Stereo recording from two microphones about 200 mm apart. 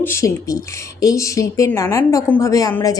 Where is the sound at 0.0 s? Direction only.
15° left (ahead or behind).